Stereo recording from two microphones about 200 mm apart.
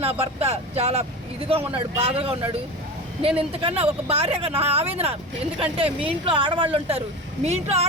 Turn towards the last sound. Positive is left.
turn(degrees=-30)  # may be behind; listen again after turning